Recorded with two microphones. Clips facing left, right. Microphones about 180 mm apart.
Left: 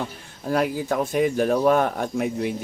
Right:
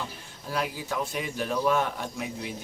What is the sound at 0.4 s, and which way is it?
Speech, 50° left (ahead or behind).